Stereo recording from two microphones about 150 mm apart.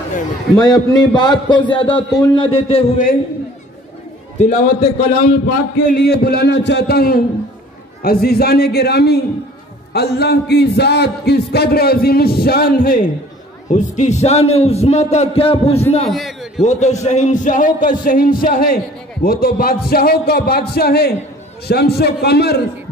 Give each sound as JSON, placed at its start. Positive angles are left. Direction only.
{"t": 0.6, "sound": "a man's voice", "side_deg": 25}
{"t": 4.4, "sound": "a man's voice", "side_deg": 55}
{"t": 13.7, "sound": "a man's voice", "side_deg": 55}
{"t": 16.1, "sound": "a sound", "side_deg": 0}
{"t": 16.6, "sound": "a man's voice", "side_deg": 50}
{"t": 19.2, "sound": "a man's voice", "side_deg": 85}